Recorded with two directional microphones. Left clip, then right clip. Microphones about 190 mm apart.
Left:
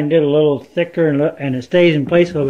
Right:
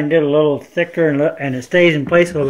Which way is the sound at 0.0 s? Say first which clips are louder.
Even; 15° left (ahead or behind).